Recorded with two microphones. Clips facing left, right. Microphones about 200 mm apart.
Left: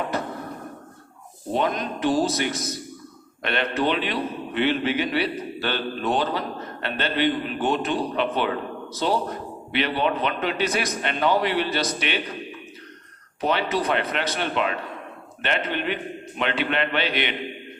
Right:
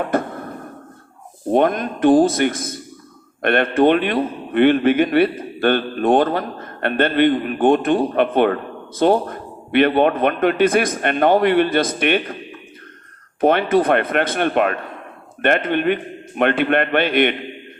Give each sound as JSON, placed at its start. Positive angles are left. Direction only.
{"t": 0.0, "sound": "a sound", "side_deg": -50}
{"t": 1.5, "sound": "a man's voice", "side_deg": -50}
{"t": 13.4, "sound": "a man's voice", "side_deg": -50}